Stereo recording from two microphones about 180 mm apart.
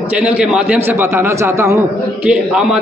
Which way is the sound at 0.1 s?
5° right (ahead or behind).